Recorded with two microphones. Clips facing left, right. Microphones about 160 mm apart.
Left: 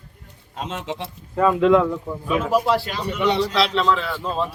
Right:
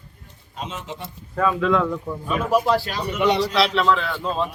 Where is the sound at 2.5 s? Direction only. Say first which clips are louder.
Right 2 dB; 5° right (ahead or behind).